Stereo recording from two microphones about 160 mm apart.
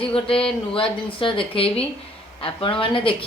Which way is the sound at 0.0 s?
35° left (ahead or behind).